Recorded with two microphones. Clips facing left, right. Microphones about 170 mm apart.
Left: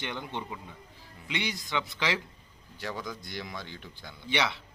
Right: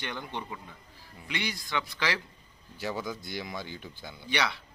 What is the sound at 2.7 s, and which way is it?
Speech, 5° right (ahead or behind).